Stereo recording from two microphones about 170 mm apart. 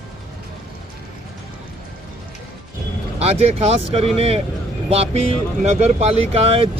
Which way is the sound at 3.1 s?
40° right (ahead or behind).